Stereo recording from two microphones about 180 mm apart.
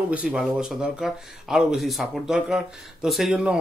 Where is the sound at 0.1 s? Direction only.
5° right (ahead or behind).